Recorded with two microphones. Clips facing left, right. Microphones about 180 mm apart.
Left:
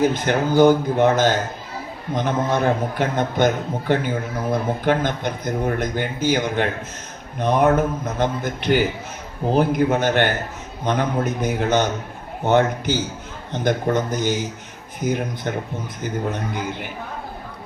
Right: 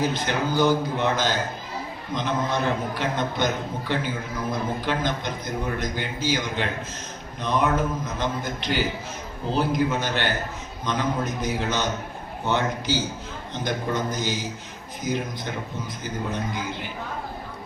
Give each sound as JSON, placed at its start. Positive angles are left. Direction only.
{"t": 0.0, "sound": "a man's voice", "side_deg": 50}